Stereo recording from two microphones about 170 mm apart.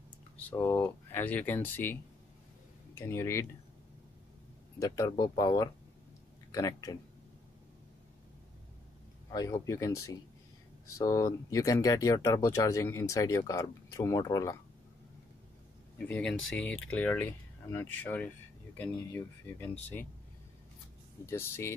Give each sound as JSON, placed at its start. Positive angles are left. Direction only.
{"t": 0.4, "sound": "speech", "side_deg": 10}
{"t": 4.7, "sound": "speech", "side_deg": 20}
{"t": 9.3, "sound": "speech", "side_deg": 20}
{"t": 16.1, "sound": "speech", "side_deg": 5}
{"t": 21.3, "sound": "speech", "side_deg": 15}